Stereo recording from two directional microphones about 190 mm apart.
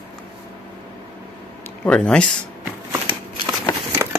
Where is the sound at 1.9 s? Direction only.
5° left (ahead or behind).